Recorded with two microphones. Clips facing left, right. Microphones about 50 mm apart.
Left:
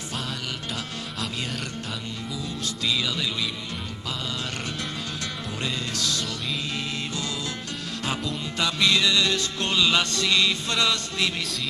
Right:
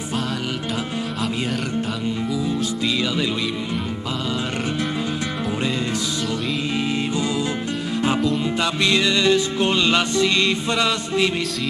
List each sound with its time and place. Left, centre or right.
8.5 s music: right